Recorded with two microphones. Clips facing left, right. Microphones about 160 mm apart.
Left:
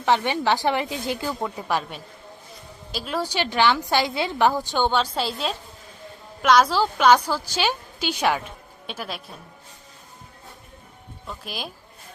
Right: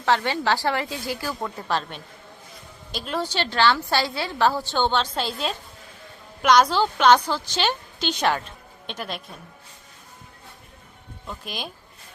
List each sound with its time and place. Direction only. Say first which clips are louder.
0.0 s a woman's voice: left 1 dB; 15° left (ahead or behind)
11.3 s speech: even; centre (ahead or behind)